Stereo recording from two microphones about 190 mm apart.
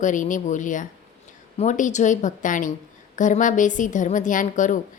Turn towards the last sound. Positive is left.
turn(degrees=40)  # may be behind; listen again after turning